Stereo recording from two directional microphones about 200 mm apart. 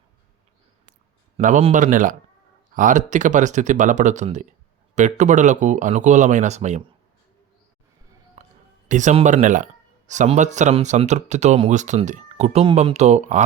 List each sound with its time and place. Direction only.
1.4 s speech: 35° right (ahead or behind)
8.4 s whispering: 35° right (ahead or behind)
8.9 s speech: 35° right (ahead or behind)